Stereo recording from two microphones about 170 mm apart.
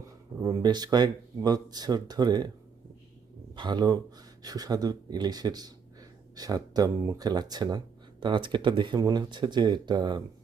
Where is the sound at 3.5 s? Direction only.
25° right (ahead or behind).